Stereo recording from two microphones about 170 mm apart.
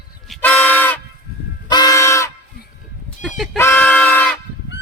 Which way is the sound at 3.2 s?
Centre (ahead or behind).